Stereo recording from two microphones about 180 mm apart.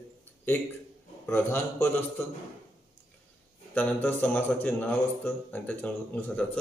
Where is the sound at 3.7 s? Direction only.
10° left (ahead or behind).